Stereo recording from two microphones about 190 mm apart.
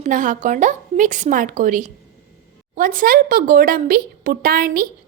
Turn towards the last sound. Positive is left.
turn(degrees=-50)  # may be behind; listen again after turning